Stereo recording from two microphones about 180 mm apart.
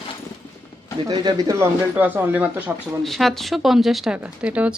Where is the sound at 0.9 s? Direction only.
25° right (ahead or behind).